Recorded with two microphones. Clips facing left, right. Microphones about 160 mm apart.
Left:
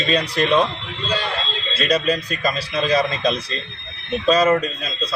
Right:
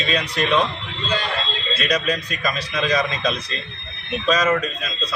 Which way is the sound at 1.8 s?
35° left (ahead or behind).